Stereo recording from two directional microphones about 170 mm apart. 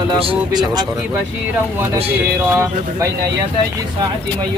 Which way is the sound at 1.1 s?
10° right (ahead or behind).